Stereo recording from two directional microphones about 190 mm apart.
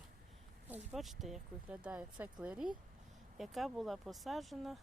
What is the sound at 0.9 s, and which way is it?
Speech, centre (ahead or behind).